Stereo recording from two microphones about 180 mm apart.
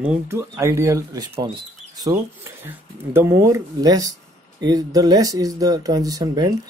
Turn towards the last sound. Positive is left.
turn(degrees=-20)  # may be behind; listen again after turning